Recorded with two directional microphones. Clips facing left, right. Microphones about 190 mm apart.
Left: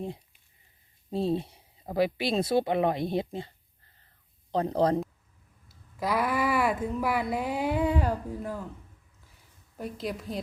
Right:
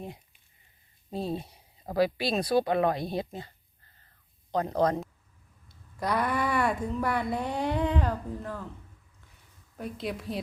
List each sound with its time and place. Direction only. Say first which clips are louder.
1.1 s speech: left 5 dB; 25° left (ahead or behind)
4.5 s speech: left 1 dB; 30° left (ahead or behind)
5.6 s speech: even; 5° left (ahead or behind)
9.7 s a woman's voice: even; centre (ahead or behind)